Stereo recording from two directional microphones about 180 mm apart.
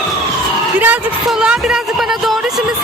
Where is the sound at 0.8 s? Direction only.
5° right (ahead or behind).